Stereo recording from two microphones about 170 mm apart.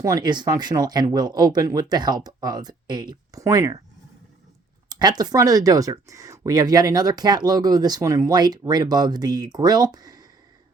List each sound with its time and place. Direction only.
0.0 s speech: 25° right (ahead or behind)
4.9 s speech: 25° right (ahead or behind)